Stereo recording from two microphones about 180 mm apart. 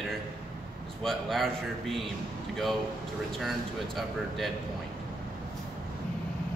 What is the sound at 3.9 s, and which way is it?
Speech, centre (ahead or behind).